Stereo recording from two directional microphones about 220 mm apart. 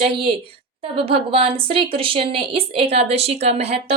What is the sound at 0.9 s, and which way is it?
A woman's voice, 25° right (ahead or behind).